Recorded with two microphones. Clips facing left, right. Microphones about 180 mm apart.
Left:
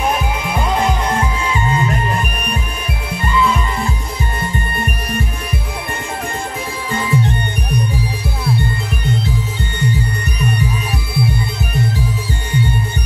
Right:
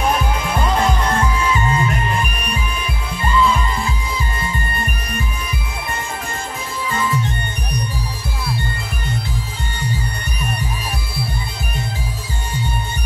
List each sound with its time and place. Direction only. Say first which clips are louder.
1.4 s music: even; 30° left (ahead or behind)
6.9 s music: left 3 dB; 65° left (ahead or behind)